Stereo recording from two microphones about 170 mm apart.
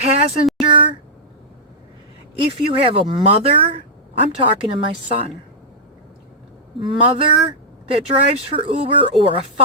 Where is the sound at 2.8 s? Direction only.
30° right (ahead or behind).